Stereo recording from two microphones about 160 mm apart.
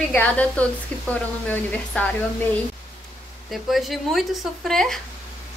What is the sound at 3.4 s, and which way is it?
Speech, centre (ahead or behind).